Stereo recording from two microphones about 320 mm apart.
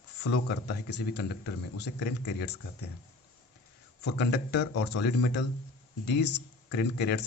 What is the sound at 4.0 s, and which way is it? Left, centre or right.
Speech, left.